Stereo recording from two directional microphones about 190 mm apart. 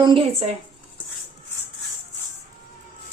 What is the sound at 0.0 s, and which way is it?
Speech, 25° right (ahead or behind).